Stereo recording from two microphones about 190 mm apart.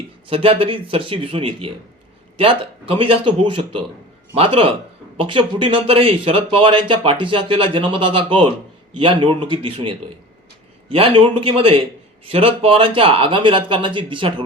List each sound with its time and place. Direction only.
0.3 s speech: 30° right (ahead or behind)